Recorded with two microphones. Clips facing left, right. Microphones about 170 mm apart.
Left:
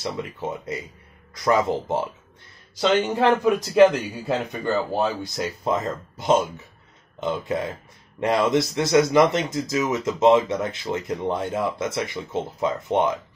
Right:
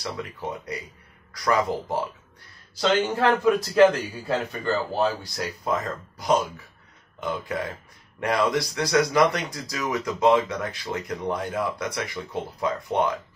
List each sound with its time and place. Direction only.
0.0 s speech: 25° left (ahead or behind)